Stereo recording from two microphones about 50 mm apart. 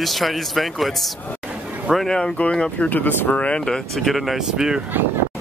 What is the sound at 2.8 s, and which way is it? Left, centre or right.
Speech, left.